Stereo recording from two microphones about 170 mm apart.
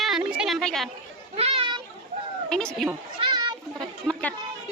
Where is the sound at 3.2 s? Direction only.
30° right (ahead or behind).